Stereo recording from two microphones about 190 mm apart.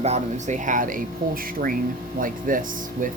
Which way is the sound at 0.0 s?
35° right (ahead or behind).